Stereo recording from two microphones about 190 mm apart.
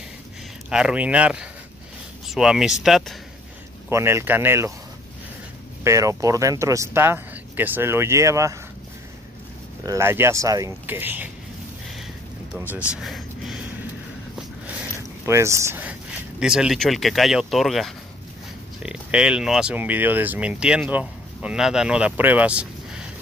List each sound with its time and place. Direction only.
0.7 s speech: 5° right (ahead or behind)
3.9 s speech: 15° right (ahead or behind)
5.9 s speech: 15° right (ahead or behind)
9.8 s speech: 15° right (ahead or behind)
12.6 s a sound: 5° right (ahead or behind)
15.2 s speech: 15° right (ahead or behind)